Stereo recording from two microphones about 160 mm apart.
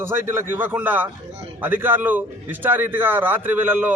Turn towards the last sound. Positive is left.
turn(degrees=-10)  # may be behind; listen again after turning